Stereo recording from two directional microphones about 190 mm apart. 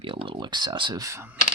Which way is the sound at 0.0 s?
25° right (ahead or behind).